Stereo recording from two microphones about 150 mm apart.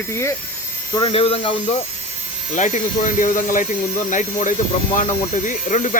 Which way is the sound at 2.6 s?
55° left (ahead or behind).